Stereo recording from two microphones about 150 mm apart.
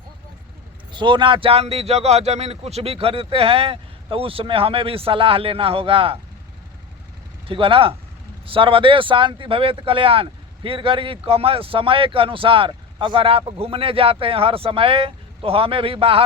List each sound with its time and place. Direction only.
0.9 s speech: 30° right (ahead or behind)
7.4 s speech: 35° right (ahead or behind)